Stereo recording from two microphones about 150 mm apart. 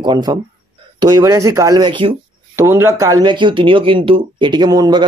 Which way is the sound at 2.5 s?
20° right (ahead or behind).